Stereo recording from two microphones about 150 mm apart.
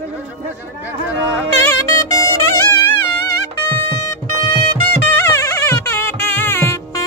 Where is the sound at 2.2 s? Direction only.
20° left (ahead or behind).